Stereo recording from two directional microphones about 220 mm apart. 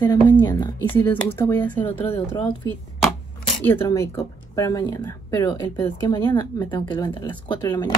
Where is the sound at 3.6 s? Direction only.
15° left (ahead or behind).